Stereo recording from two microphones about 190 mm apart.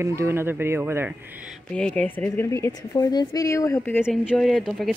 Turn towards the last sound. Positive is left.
turn(degrees=0)  # may be behind; listen again after turning